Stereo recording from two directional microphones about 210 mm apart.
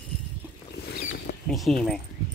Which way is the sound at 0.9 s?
50° left (ahead or behind).